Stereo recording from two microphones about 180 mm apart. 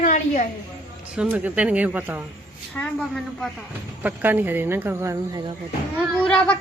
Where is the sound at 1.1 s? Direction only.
5° right (ahead or behind).